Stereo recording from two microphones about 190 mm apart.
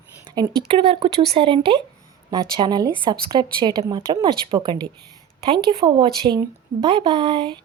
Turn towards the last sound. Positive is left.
turn(degrees=-25)  # may be behind; listen again after turning